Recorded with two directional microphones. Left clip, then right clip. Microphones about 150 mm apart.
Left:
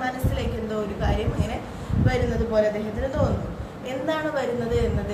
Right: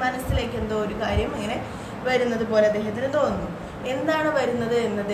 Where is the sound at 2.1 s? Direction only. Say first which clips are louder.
Right 3 dB; 10° right (ahead or behind).